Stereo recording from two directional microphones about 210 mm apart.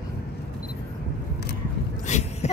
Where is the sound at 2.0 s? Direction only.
35° left (ahead or behind).